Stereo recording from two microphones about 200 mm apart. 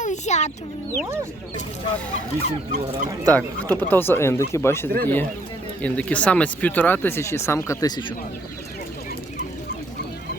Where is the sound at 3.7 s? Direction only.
10° left (ahead or behind).